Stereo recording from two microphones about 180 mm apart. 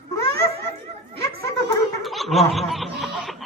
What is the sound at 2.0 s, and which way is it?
Snicker, centre (ahead or behind).